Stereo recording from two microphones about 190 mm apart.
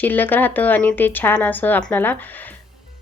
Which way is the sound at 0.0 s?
10° left (ahead or behind).